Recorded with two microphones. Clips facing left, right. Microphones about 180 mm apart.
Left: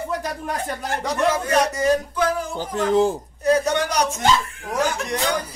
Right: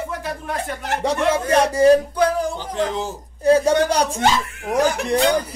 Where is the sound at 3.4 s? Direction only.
30° right (ahead or behind).